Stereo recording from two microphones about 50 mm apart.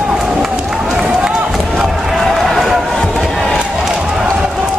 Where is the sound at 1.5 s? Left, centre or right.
Centre.